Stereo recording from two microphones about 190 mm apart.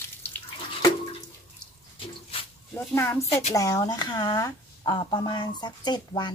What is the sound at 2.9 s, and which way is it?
Speech, 15° left (ahead or behind).